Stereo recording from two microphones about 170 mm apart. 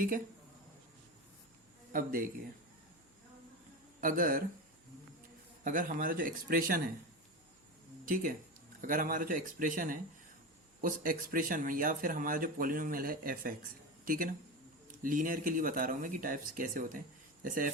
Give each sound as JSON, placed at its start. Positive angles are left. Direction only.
{"t": 1.9, "sound": "speech", "side_deg": -55}
{"t": 4.0, "sound": "speech", "side_deg": -55}
{"t": 5.6, "sound": "speech", "side_deg": -55}
{"t": 8.0, "sound": "speech", "side_deg": -55}